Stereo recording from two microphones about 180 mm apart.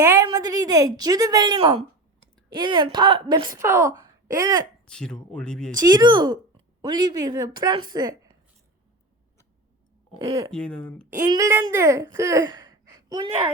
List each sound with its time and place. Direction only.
0.0 s a woman's voice: 15° right (ahead or behind)
3.6 s a woman's voice: 15° right (ahead or behind)
4.9 s speech: 5° left (ahead or behind)
5.7 s a woman's voice: 20° right (ahead or behind)
10.2 s a woman's voice: 30° right (ahead or behind)
10.5 s speech: 5° left (ahead or behind)
11.3 s speech: 15° right (ahead or behind)